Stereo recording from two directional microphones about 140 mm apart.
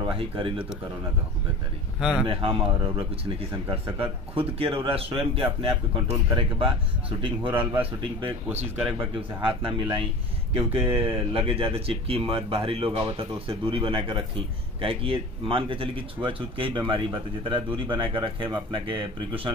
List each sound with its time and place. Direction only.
0.0 s speech: 40° right (ahead or behind)
2.0 s speech: 5° right (ahead or behind)
2.2 s speech: 40° right (ahead or behind)